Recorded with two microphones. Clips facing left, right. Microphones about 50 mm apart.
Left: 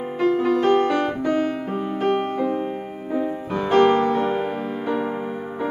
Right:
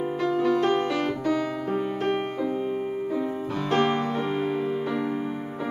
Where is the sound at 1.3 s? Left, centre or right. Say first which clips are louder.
Left 3 dB; left.